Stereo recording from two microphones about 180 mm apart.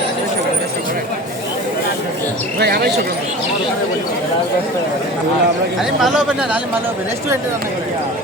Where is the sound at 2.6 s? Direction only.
60° right (ahead or behind).